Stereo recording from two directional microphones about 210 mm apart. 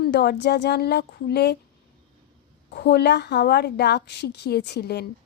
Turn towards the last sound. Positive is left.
turn(degrees=50)  # may be behind; listen again after turning